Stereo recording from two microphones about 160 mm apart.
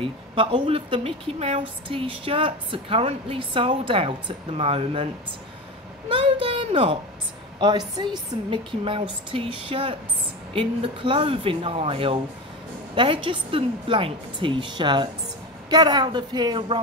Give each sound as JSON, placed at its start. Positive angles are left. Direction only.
{"t": 0.0, "sound": "a woman's voice", "side_deg": -30}
{"t": 6.0, "sound": "a sound", "side_deg": -35}
{"t": 6.4, "sound": "a woman's voice", "side_deg": -30}